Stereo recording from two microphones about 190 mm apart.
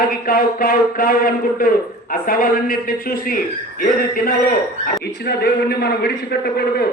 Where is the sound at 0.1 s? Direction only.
50° left (ahead or behind).